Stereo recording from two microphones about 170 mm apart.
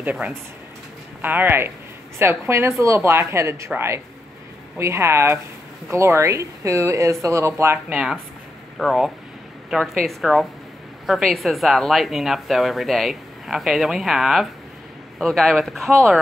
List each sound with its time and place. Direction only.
0.0 s a woman's voice: 10° right (ahead or behind)